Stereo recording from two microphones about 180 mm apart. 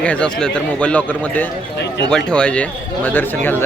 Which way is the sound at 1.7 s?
70° left (ahead or behind).